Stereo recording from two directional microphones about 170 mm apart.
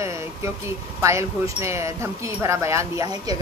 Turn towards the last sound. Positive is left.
turn(degrees=-20)  # may be behind; listen again after turning